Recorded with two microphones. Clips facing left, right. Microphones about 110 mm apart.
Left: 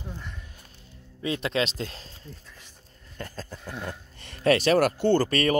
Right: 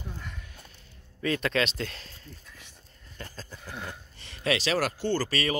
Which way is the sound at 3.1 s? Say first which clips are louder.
Left 5 dB; 45° left (ahead or behind).